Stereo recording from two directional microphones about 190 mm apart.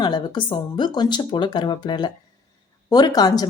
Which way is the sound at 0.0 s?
20° left (ahead or behind).